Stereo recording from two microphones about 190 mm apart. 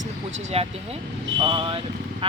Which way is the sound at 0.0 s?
40° right (ahead or behind).